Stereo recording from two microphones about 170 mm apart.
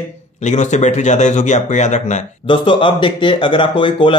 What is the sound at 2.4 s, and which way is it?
Speech, 30° left (ahead or behind).